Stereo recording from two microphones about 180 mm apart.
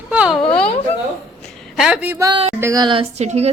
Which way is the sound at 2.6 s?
20° right (ahead or behind).